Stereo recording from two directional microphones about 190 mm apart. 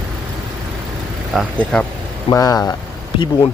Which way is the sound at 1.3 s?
Centre (ahead or behind).